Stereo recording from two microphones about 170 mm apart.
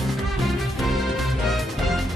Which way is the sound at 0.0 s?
Centre (ahead or behind).